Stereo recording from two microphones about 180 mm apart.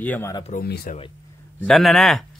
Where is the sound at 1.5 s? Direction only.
Centre (ahead or behind).